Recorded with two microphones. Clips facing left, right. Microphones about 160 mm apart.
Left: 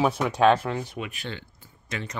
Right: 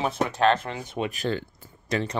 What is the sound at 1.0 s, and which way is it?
Speech, 40° right (ahead or behind).